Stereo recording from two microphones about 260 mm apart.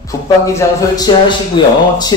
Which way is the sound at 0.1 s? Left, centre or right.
Centre.